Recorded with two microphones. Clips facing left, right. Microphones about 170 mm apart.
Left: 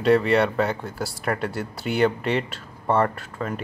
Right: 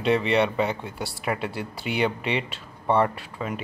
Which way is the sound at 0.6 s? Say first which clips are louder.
Left 2 dB; 10° right (ahead or behind).